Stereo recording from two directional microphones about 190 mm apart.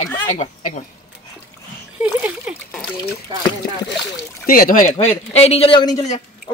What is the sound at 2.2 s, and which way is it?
Speech, 5° right (ahead or behind).